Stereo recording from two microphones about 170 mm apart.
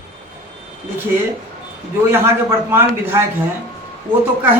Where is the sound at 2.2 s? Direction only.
15° right (ahead or behind).